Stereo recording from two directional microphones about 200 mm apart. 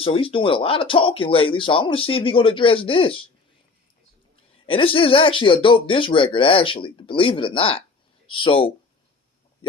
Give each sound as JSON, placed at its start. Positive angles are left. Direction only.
{"t": 0.0, "sound": "speech", "side_deg": 25}
{"t": 4.6, "sound": "speech", "side_deg": 25}